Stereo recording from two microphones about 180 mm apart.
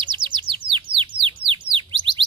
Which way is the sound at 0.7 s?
30° right (ahead or behind).